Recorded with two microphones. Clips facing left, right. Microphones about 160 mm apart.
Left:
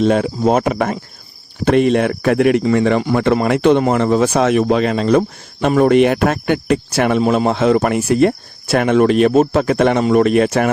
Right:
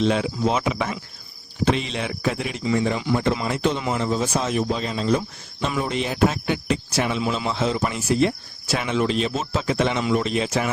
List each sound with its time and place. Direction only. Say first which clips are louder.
0.0 s speech: left 7 dB; 50° left (ahead or behind)